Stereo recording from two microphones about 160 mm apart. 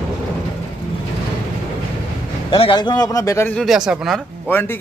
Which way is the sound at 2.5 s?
30° left (ahead or behind).